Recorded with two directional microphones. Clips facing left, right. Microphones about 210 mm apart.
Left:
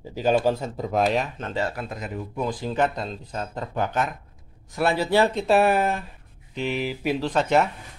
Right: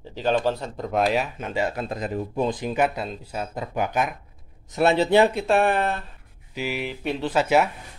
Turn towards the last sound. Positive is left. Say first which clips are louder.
# right 1 dB
turn(degrees=-5)  # may be behind; listen again after turning